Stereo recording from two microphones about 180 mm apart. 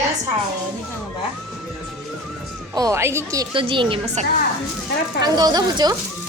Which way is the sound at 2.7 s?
20° right (ahead or behind).